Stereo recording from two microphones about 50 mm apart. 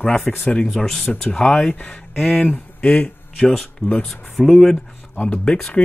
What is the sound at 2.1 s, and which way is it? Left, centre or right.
Speech, centre.